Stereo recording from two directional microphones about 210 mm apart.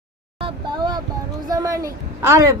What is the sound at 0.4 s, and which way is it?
Vehicle, 20° right (ahead or behind).